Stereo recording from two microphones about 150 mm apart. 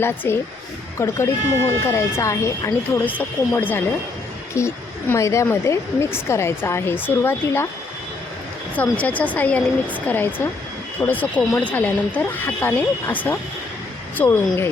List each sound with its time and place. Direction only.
0.2 s speech: 15° left (ahead or behind)
8.7 s speech: 10° left (ahead or behind)